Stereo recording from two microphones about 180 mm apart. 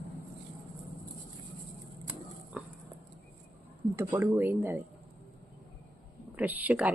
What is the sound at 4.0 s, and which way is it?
Speech, 15° right (ahead or behind).